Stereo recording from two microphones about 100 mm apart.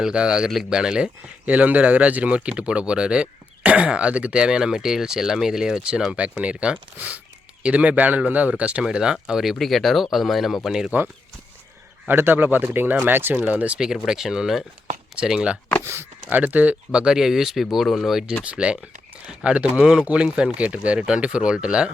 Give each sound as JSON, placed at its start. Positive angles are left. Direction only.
{"t": 0.0, "sound": "speech", "side_deg": -10}
{"t": 12.0, "sound": "speech", "side_deg": -20}
{"t": 15.8, "sound": "speech", "side_deg": -25}